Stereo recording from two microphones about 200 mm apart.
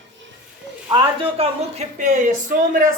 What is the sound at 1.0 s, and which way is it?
A woman's voice, 30° right (ahead or behind).